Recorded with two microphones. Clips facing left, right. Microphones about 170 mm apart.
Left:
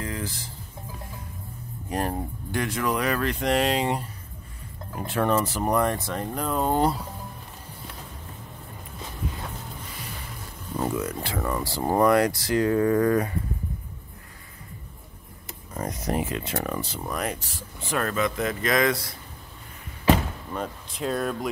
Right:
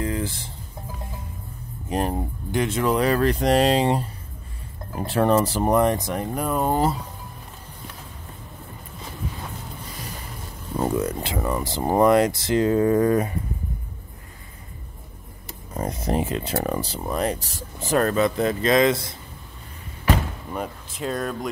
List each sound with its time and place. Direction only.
0.0 s music: 30° right (ahead or behind)
1.9 s speech: 20° right (ahead or behind); by 7.0 s 5° right (ahead or behind)
10.8 s a sound: 35° right (ahead or behind)
11.1 s speech: 20° right (ahead or behind)
15.4 s speech: 25° right (ahead or behind)
20.5 s speech: 5° right (ahead or behind)